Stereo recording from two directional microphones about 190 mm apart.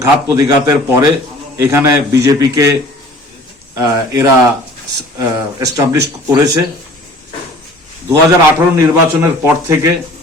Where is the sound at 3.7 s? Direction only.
20° right (ahead or behind).